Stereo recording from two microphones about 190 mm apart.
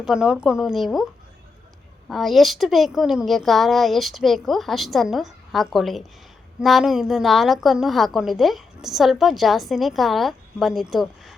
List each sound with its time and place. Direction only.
0.0 s a woman's voice: 5° right (ahead or behind)
2.0 s a woman's voice: centre (ahead or behind)